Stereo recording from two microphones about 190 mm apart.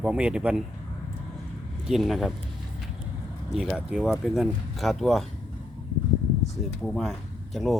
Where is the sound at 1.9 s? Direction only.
Centre (ahead or behind).